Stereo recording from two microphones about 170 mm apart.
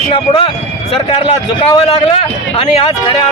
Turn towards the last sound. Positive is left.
turn(degrees=30)  # may be behind; listen again after turning